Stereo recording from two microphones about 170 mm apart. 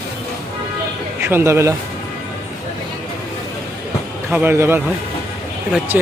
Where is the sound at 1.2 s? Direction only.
15° right (ahead or behind).